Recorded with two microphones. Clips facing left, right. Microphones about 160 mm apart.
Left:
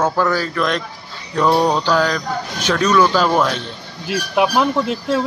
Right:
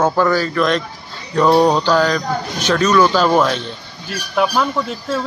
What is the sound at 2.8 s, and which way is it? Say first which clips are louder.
Speech: right 1 dB; 5° right (ahead or behind).